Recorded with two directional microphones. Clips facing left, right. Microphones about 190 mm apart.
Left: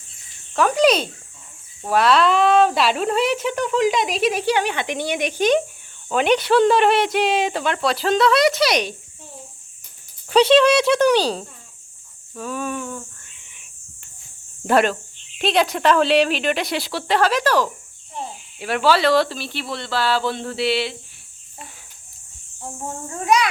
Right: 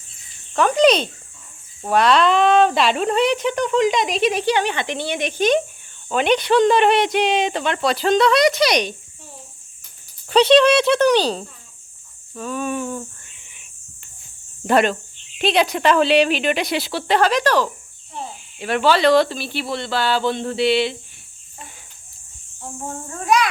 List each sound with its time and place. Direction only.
0.5 s speech: 5° left (ahead or behind)
10.2 s speech: 10° left (ahead or behind)
12.7 s cricket: 25° right (ahead or behind)
14.7 s speech: 5° left (ahead or behind)